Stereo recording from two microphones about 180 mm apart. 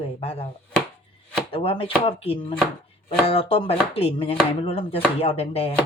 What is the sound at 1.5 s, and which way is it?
Speech, 30° left (ahead or behind).